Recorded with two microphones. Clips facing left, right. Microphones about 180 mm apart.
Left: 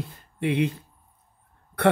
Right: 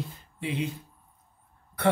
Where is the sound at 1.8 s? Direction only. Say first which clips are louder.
Left 4 dB; 65° left (ahead or behind).